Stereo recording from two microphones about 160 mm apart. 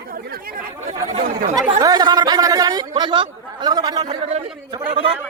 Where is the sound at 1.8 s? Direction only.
25° right (ahead or behind).